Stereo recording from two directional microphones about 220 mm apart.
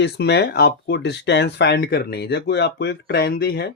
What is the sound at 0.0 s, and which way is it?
Speech, 50° left (ahead or behind).